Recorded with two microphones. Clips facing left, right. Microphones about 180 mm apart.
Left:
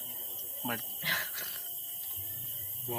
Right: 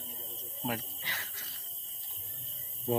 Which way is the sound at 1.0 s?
75° left (ahead or behind).